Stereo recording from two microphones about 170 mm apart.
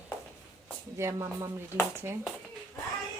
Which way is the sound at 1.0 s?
15° right (ahead or behind).